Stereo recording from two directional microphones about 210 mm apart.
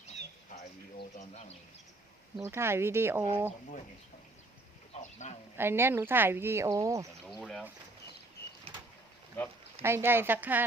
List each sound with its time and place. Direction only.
0.9 s speech: 30° left (ahead or behind)
2.4 s speech: 10° right (ahead or behind)
5.2 s speech: 35° left (ahead or behind)
5.5 s speech: 10° right (ahead or behind)
7.3 s speech: centre (ahead or behind)
8.7 s vehicle: 30° right (ahead or behind)
9.8 s speech: 10° right (ahead or behind)